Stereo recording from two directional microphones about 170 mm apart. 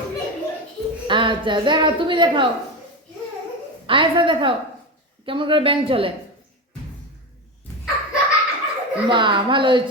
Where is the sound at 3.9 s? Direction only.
30° right (ahead or behind).